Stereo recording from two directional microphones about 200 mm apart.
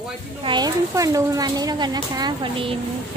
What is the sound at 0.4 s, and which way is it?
Speech, 20° right (ahead or behind).